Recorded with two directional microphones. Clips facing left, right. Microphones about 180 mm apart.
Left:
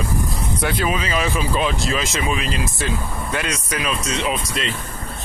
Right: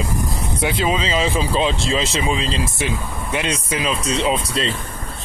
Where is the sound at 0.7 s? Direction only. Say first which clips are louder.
Right 3 dB; 25° right (ahead or behind).